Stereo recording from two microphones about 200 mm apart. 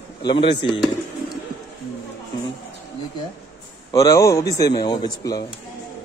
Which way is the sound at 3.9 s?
15° left (ahead or behind).